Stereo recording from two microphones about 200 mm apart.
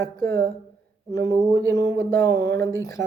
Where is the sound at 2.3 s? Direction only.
55° right (ahead or behind).